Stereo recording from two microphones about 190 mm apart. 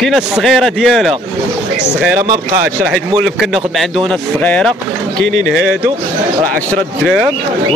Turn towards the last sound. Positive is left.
turn(degrees=0)  # may be behind; listen again after turning